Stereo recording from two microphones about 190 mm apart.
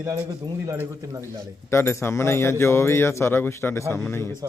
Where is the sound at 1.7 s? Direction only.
15° left (ahead or behind).